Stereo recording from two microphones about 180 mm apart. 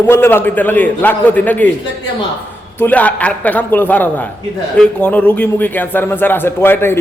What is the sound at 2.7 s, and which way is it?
A man's voice, 10° left (ahead or behind).